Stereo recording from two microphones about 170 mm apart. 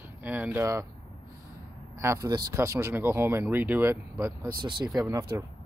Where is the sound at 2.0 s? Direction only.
20° right (ahead or behind).